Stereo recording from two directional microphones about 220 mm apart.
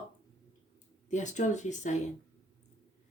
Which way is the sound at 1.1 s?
35° left (ahead or behind).